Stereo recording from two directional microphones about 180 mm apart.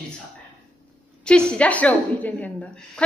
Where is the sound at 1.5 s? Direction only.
5° left (ahead or behind).